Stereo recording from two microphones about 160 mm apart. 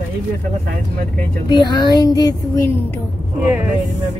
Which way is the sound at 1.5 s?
25° left (ahead or behind).